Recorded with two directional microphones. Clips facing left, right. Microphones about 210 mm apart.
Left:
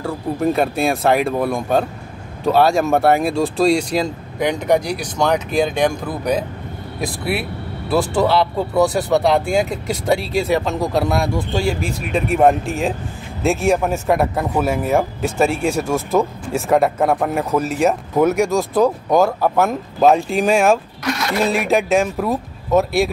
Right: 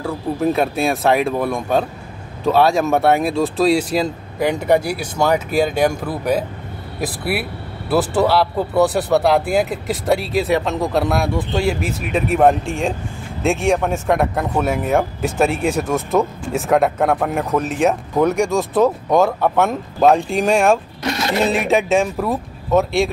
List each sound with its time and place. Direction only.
0.0 s speech: centre (ahead or behind)
21.0 s cash register: 25° right (ahead or behind)
21.5 s speech: centre (ahead or behind)